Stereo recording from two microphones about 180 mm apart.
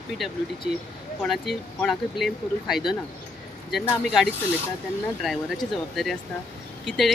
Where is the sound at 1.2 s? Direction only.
Centre (ahead or behind).